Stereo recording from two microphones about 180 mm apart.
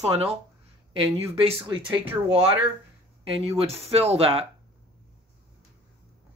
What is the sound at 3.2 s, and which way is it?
Speech, 30° right (ahead or behind).